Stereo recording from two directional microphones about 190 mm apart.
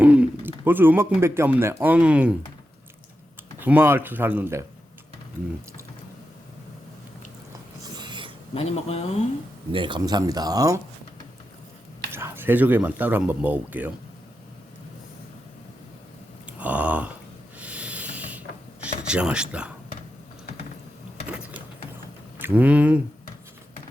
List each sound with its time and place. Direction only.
0.0 s a sound: 5° right (ahead or behind)
0.6 s speech: 10° right (ahead or behind)
3.6 s speech: 10° right (ahead or behind)
7.9 s a sound: 25° right (ahead or behind)
8.5 s speech: 35° left (ahead or behind)
9.7 s speech: 25° right (ahead or behind)
12.1 s speech: 10° right (ahead or behind)
16.5 s a sound: 5° right (ahead or behind)
22.4 s speech: 10° right (ahead or behind)